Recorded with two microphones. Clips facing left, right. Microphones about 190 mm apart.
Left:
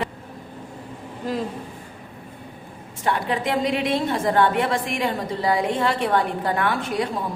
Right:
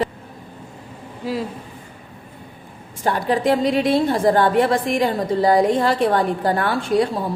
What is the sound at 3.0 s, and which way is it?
A woman's voice, 35° right (ahead or behind).